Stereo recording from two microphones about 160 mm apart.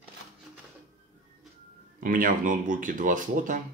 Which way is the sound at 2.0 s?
60° right (ahead or behind).